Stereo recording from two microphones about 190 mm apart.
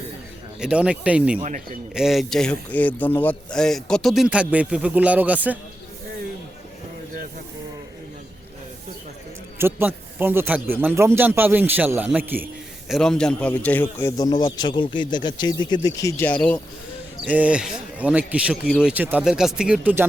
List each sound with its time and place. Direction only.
0.6 s a man's voice: 5° right (ahead or behind)
1.4 s speech: 40° right (ahead or behind)
1.9 s speech: centre (ahead or behind)
9.6 s a man's voice: 10° right (ahead or behind)
12.9 s speech: 5° left (ahead or behind)
13.8 s speech: 20° left (ahead or behind)
17.2 s a man's voice: 10° right (ahead or behind)